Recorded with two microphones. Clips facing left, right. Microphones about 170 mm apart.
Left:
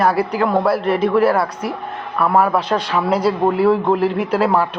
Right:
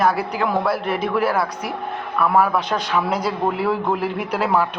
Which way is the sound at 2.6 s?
30° left (ahead or behind).